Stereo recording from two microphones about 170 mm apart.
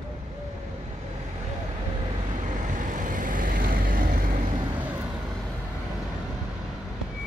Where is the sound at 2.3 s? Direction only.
45° right (ahead or behind).